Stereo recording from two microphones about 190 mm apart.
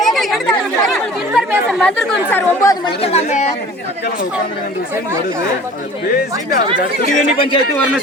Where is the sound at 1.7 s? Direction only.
10° left (ahead or behind).